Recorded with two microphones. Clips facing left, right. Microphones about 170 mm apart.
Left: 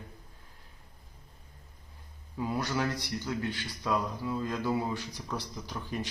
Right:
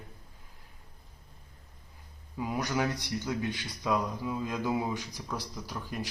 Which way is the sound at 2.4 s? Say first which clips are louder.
Even; 15° right (ahead or behind).